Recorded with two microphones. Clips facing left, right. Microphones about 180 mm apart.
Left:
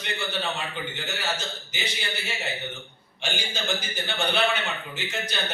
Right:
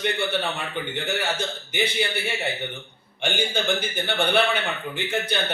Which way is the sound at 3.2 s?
55° right (ahead or behind).